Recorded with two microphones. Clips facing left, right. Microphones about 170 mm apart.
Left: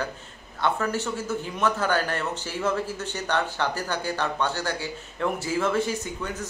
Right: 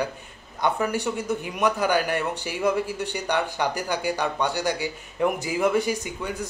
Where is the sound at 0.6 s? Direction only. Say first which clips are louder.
Right 2 dB; 15° right (ahead or behind).